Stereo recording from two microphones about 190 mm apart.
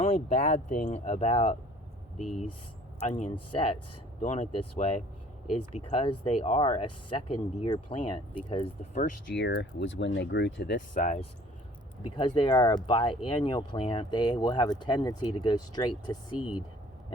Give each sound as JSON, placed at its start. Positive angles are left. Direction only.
{"t": 0.1, "sound": "speech", "side_deg": 45}
{"t": 3.0, "sound": "speech", "side_deg": 35}
{"t": 9.3, "sound": "speech", "side_deg": 60}
{"t": 10.8, "sound": "speech", "side_deg": 40}
{"t": 12.0, "sound": "speech", "side_deg": 25}
{"t": 16.4, "sound": "speech", "side_deg": -5}